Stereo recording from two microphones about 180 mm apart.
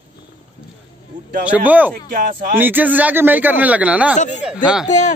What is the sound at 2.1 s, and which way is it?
Speech, 55° right (ahead or behind).